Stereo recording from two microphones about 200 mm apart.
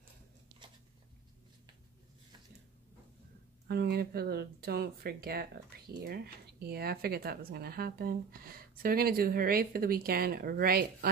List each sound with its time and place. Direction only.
3.6 s speech: 55° right (ahead or behind)